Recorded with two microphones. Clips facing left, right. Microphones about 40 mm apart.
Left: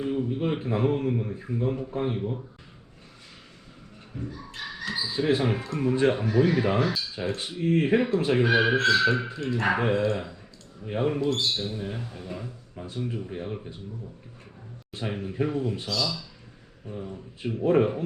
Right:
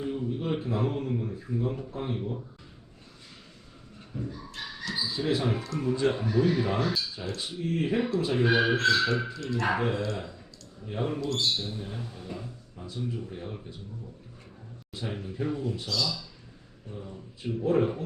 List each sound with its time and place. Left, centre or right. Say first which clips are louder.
0.0 s speech: left 4 dB; left
4.1 s dog: even; centre
4.9 s speech: left 4 dB; left
8.5 s speech: left 2 dB; left
12.7 s speech: left 4 dB; left
13.1 s speech: left 3 dB; left
14.9 s speech: left 5 dB; left